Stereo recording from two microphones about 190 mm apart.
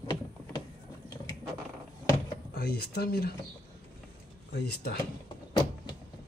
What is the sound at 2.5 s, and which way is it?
Speech, 55° left (ahead or behind).